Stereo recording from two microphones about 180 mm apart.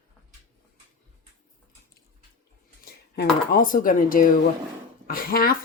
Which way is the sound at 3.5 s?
50° left (ahead or behind).